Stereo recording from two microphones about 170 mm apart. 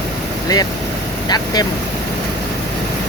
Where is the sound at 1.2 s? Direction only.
25° left (ahead or behind).